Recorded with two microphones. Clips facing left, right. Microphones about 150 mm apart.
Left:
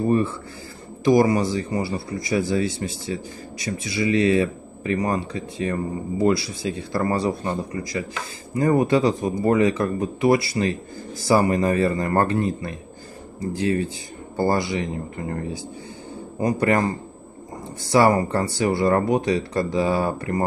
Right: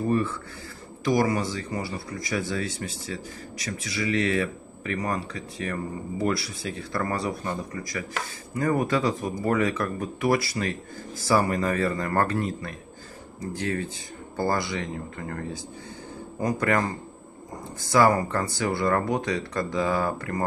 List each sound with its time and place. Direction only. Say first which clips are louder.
0.0 s speech: left 4 dB; 25° left (ahead or behind)
8.5 s speech: left 6 dB; 25° left (ahead or behind)
14.3 s speech: left 5 dB; 20° left (ahead or behind)
17.9 s speech: left 3 dB; 25° left (ahead or behind)